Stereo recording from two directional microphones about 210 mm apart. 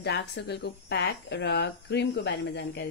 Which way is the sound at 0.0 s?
50° left (ahead or behind).